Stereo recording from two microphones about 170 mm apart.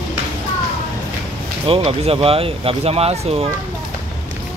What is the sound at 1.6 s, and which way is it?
Speech, 30° right (ahead or behind).